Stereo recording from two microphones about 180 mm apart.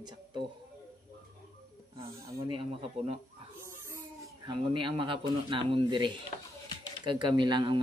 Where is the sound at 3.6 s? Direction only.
15° right (ahead or behind).